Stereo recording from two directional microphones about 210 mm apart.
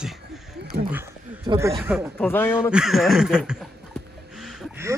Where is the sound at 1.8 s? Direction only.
10° right (ahead or behind).